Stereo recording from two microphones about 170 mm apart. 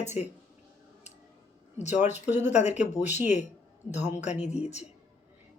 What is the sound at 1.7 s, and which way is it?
Speech, 45° left (ahead or behind).